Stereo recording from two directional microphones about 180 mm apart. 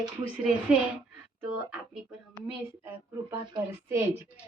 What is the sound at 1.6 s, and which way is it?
A woman's voice, 5° right (ahead or behind).